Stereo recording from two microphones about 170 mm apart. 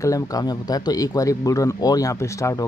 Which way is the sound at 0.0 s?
20° left (ahead or behind).